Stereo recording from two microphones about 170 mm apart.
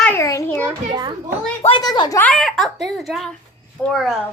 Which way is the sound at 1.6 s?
25° left (ahead or behind).